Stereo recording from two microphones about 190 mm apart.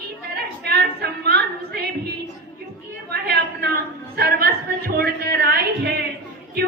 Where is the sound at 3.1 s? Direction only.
60° right (ahead or behind).